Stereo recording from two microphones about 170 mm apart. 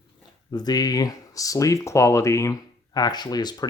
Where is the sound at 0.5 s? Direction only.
20° left (ahead or behind).